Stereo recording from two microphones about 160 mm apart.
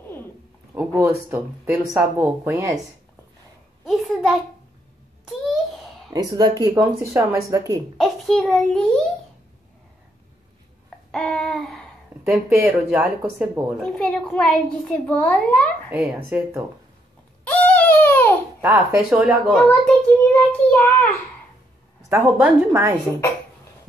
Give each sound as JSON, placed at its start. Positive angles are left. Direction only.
{"t": 0.7, "sound": "speech", "side_deg": -15}
{"t": 3.8, "sound": "a sound", "side_deg": 0}
{"t": 6.0, "sound": "speech", "side_deg": -25}
{"t": 8.0, "sound": "a child's voice", "side_deg": 5}
{"t": 11.1, "sound": "a sound", "side_deg": 5}
{"t": 12.3, "sound": "speech", "side_deg": -15}
{"t": 13.8, "sound": "a child's voice", "side_deg": 5}
{"t": 15.9, "sound": "speech", "side_deg": -10}
{"t": 17.5, "sound": "a sound", "side_deg": 10}
{"t": 18.6, "sound": "speech", "side_deg": -5}
{"t": 19.5, "sound": "a child's voice", "side_deg": 5}
{"t": 22.4, "sound": "speech", "side_deg": -10}